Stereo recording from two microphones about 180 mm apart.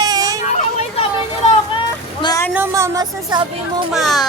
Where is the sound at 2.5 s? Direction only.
15° right (ahead or behind).